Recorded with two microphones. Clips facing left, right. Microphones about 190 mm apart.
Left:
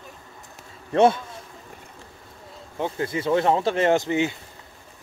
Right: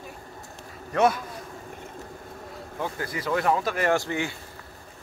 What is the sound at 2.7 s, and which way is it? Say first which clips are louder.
Speech: left 5 dB; 25° left (ahead or behind).